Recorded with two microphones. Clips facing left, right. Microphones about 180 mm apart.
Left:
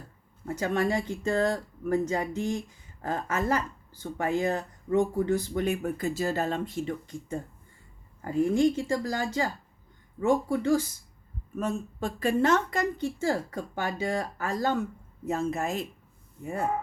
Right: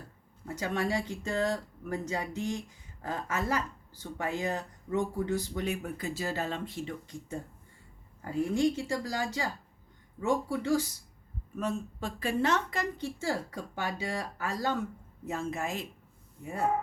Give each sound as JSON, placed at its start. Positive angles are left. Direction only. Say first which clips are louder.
{"t": 0.4, "sound": "speech", "louder": "left 5 dB", "side_deg": 55}